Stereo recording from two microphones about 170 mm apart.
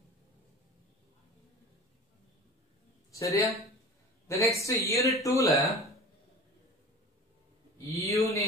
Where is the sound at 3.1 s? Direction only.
20° left (ahead or behind).